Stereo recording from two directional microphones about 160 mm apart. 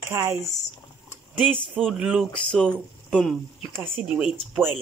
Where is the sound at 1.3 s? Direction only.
10° right (ahead or behind).